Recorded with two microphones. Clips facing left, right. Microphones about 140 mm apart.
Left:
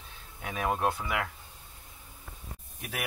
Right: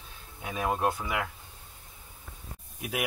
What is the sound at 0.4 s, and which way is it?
Speech, 10° right (ahead or behind).